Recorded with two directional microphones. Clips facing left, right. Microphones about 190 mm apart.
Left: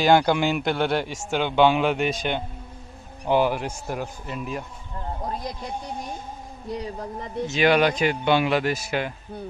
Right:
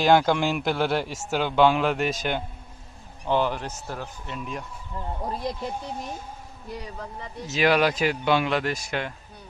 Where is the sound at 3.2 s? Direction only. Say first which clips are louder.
Left 3 dB; 10° left (ahead or behind).